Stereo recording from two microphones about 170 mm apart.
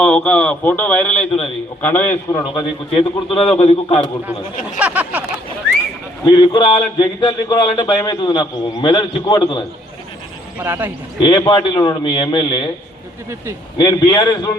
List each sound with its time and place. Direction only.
0.0 s a man's voice: 5° left (ahead or behind)
2.4 s a man's voice: 30° left (ahead or behind)
4.8 s a sound: 10° right (ahead or behind)
6.2 s a man's voice: 25° left (ahead or behind)
10.6 s a sound: 10° right (ahead or behind)
11.4 s a man's voice: 25° left (ahead or behind)
13.7 s a man's voice: 25° left (ahead or behind)